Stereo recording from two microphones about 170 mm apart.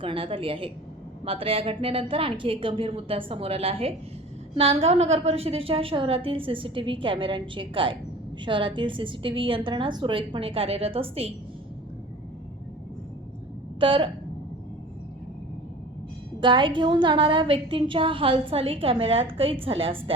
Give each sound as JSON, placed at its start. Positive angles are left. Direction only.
{"t": 0.0, "sound": "a woman's voice", "side_deg": -30}
{"t": 13.7, "sound": "a woman's voice", "side_deg": -30}
{"t": 16.4, "sound": "a woman's voice", "side_deg": -30}